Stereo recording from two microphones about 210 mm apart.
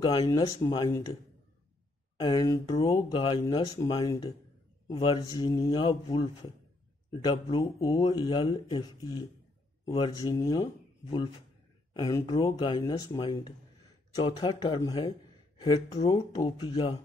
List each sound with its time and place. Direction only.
0.0 s speech: 25° left (ahead or behind)
2.1 s speech: 20° left (ahead or behind)